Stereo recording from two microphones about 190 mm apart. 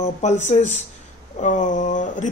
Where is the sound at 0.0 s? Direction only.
35° left (ahead or behind).